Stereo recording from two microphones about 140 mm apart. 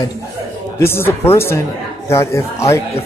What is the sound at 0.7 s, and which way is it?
Speech, 15° left (ahead or behind).